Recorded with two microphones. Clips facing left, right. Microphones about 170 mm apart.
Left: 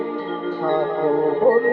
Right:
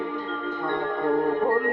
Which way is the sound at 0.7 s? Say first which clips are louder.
Left 5 dB; 25° left (ahead or behind).